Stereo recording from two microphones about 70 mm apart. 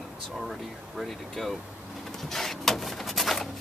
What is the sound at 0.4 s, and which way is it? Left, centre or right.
Speech, centre.